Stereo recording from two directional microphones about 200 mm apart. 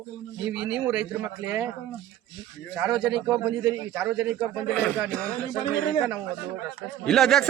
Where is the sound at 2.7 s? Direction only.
5° right (ahead or behind).